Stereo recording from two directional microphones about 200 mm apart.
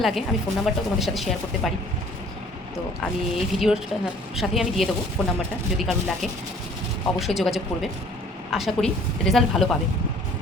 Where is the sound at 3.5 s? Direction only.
Centre (ahead or behind).